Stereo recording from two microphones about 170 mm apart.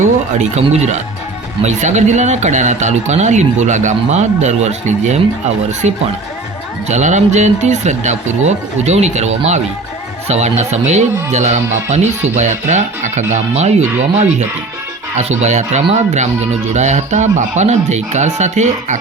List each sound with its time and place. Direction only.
0.0 s speech: 40° right (ahead or behind)
6.8 s speech: 45° right (ahead or behind)
15.1 s speech: 40° right (ahead or behind)